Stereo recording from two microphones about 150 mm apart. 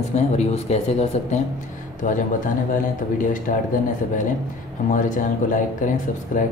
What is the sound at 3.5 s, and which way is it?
Speech, 65° left (ahead or behind).